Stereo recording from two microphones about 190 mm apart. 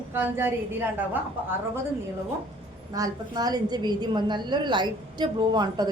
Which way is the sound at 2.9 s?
20° right (ahead or behind).